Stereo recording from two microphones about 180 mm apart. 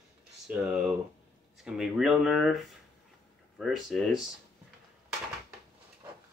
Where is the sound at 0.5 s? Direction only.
5° right (ahead or behind).